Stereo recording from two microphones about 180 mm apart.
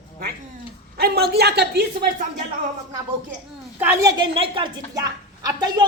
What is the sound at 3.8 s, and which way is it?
A woman's voice, 15° right (ahead or behind).